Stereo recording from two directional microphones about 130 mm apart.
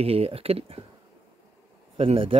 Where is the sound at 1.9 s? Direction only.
45° right (ahead or behind).